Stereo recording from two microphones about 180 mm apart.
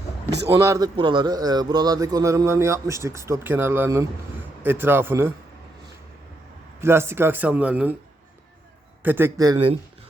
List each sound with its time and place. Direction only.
0.3 s a man's voice: 70° right (ahead or behind)
0.6 s a man's voice: 15° right (ahead or behind)
0.9 s a man's voice: 25° right (ahead or behind)
6.8 s a man's voice: 15° right (ahead or behind)
9.0 s speech: 10° right (ahead or behind)